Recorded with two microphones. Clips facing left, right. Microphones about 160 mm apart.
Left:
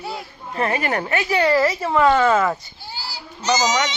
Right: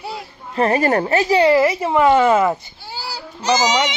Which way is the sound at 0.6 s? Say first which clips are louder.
Right 6 dB; 35° right (ahead or behind).